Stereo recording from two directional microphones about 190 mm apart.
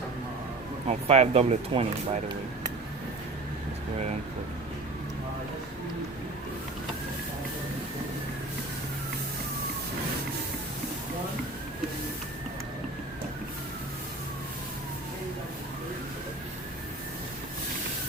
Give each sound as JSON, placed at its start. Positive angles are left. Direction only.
{"t": 0.9, "sound": "speech", "side_deg": -35}